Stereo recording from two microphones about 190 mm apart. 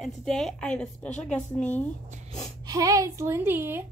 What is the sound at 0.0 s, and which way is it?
A woman's voice, centre (ahead or behind).